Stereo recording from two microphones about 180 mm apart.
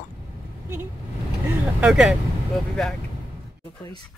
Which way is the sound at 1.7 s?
5° right (ahead or behind).